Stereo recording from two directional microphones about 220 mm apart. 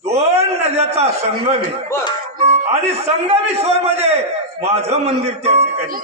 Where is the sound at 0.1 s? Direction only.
30° right (ahead or behind).